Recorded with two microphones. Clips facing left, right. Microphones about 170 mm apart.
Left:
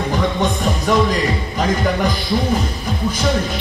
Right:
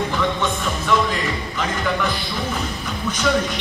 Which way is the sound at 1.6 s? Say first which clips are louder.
Left 5 dB; 40° left (ahead or behind).